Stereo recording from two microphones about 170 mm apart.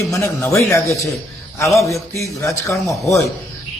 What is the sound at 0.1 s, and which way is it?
Speech, 15° left (ahead or behind).